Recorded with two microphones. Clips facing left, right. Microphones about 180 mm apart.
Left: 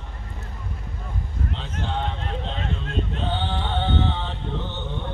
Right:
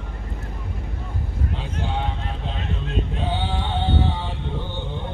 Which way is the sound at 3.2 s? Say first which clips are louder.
Right 1 dB; 10° right (ahead or behind).